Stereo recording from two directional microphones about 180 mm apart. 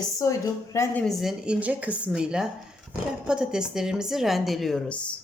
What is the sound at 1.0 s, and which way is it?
A woman's voice, centre (ahead or behind).